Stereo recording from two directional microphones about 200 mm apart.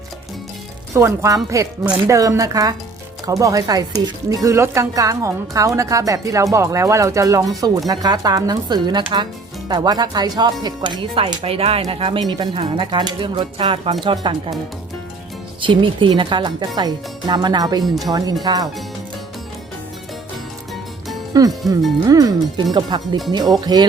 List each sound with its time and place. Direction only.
0.9 s speech: 15° right (ahead or behind)
15.6 s speech: 25° right (ahead or behind)
21.3 s speech: 20° right (ahead or behind)